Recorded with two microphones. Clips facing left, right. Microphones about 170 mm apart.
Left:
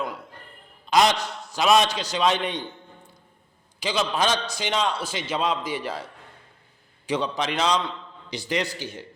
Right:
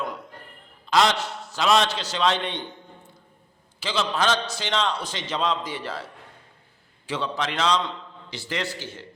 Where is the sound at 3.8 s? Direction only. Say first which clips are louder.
Left 1 dB; 15° left (ahead or behind).